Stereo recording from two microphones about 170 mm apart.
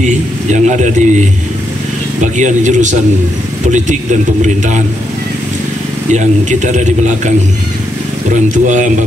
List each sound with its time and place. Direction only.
0.0 s speech: 45° right (ahead or behind)
2.3 s speech: 45° right (ahead or behind)
6.1 s speech: 45° right (ahead or behind)
8.6 s speech: 45° right (ahead or behind)